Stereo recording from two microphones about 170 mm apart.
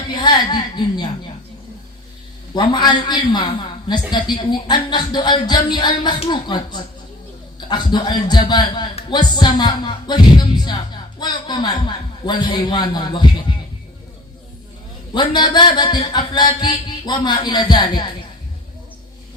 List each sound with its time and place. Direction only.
0.1 s speech: 25° left (ahead or behind)
2.6 s speech: 25° left (ahead or behind)
15.1 s speech: 25° left (ahead or behind)